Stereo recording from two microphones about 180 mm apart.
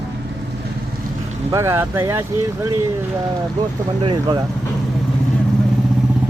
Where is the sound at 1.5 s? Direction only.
15° right (ahead or behind).